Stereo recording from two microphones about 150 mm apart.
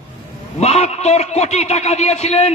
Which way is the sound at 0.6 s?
45° left (ahead or behind).